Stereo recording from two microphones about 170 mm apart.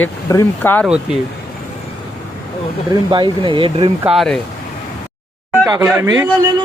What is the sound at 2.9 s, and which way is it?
Speech, 25° right (ahead or behind).